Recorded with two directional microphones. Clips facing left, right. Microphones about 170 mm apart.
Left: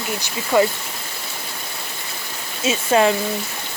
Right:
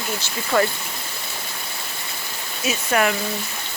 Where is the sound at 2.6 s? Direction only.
25° left (ahead or behind).